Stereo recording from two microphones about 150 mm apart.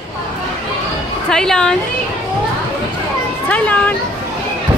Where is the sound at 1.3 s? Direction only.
5° left (ahead or behind).